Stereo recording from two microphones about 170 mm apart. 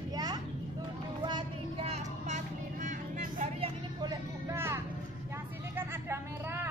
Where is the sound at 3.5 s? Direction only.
35° right (ahead or behind).